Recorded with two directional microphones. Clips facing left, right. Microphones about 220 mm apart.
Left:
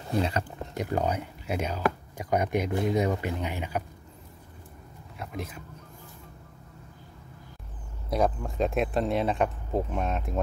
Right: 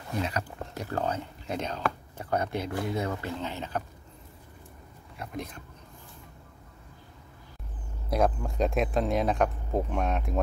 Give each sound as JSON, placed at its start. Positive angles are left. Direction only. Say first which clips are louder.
{"t": 0.1, "sound": "a sound", "louder": "left 4 dB", "side_deg": 30}
{"t": 0.8, "sound": "speech", "louder": "left 2 dB", "side_deg": 15}
{"t": 5.1, "sound": "speech", "louder": "even", "side_deg": 0}
{"t": 8.1, "sound": "speech", "louder": "even", "side_deg": 0}